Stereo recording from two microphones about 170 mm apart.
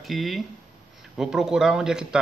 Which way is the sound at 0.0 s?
Centre (ahead or behind).